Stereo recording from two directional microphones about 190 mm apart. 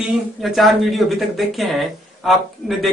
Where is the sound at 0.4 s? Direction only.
Centre (ahead or behind).